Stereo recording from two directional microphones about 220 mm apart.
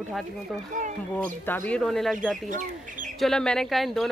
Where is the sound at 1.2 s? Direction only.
10° left (ahead or behind).